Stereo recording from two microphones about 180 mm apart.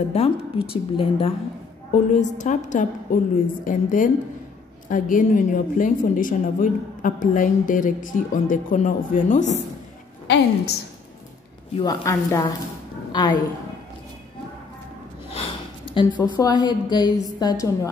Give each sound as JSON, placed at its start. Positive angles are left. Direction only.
{"t": 0.1, "sound": "a woman's voice", "side_deg": 35}
{"t": 10.2, "sound": "a woman's voice", "side_deg": 70}
{"t": 11.8, "sound": "a woman's voice", "side_deg": 20}
{"t": 15.3, "sound": "a sound", "side_deg": 30}
{"t": 16.3, "sound": "a woman's voice", "side_deg": 25}